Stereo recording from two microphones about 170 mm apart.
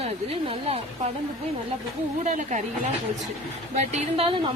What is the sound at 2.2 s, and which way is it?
Speech, 45° right (ahead or behind).